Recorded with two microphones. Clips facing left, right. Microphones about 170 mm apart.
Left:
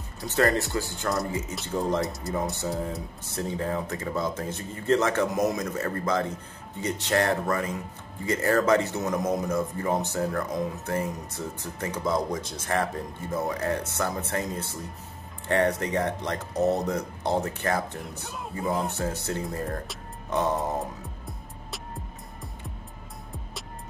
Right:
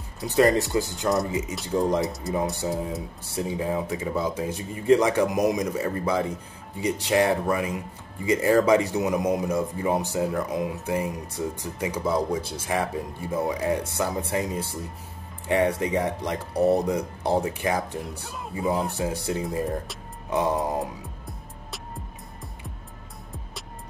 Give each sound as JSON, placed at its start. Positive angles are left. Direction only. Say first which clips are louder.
{"t": 0.4, "sound": "speech", "louder": "right 4 dB", "side_deg": -15}
{"t": 2.3, "sound": "speech", "louder": "right 3 dB", "side_deg": 0}
{"t": 2.6, "sound": "speech", "louder": "right 2 dB", "side_deg": -15}